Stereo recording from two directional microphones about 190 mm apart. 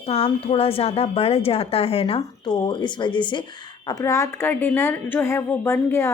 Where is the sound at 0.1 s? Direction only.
30° left (ahead or behind).